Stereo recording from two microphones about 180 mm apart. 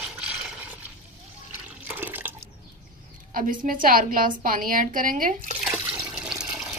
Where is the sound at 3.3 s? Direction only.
50° right (ahead or behind).